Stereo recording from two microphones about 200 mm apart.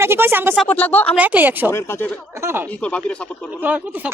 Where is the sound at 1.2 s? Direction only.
10° right (ahead or behind).